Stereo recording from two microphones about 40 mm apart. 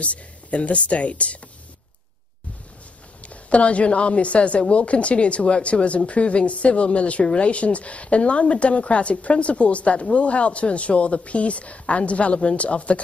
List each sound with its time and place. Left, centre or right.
0.0 s a woman's voice: left
3.2 s a woman's voice: left